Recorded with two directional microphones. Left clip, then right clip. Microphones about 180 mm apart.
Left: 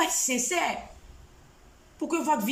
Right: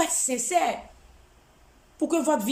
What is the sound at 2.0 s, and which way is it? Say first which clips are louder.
Speech: right 2 dB; 25° right (ahead or behind).